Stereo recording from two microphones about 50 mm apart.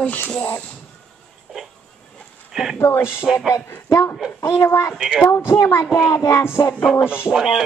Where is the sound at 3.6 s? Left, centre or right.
Left.